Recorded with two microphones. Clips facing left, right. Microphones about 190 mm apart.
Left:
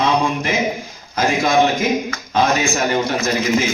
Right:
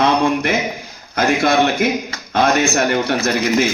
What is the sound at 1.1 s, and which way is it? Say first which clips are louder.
A man's voice: right 1 dB; 60° right (ahead or behind).